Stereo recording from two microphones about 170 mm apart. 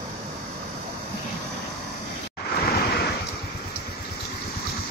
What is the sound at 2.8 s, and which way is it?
Waves, 70° left (ahead or behind).